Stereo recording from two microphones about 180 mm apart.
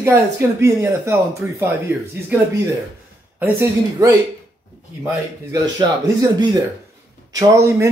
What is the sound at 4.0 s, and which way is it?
Speech, 15° right (ahead or behind).